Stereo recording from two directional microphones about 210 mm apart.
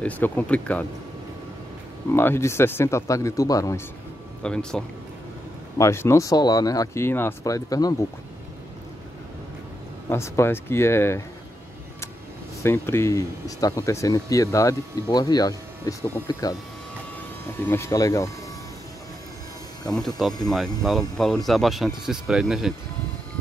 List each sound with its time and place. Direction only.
0.0 s speech: 5° left (ahead or behind)
2.1 s speech: 10° left (ahead or behind)
4.4 s speech: 5° left (ahead or behind)
10.0 s speech: 15° left (ahead or behind)
12.6 s speech: 10° left (ahead or behind)
17.6 s speech: 10° left (ahead or behind)
20.4 s speech: centre (ahead or behind)